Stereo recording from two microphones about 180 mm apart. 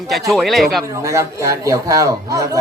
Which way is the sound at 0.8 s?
15° right (ahead or behind).